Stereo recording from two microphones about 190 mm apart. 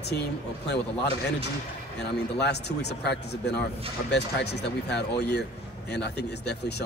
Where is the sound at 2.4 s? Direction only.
60° left (ahead or behind).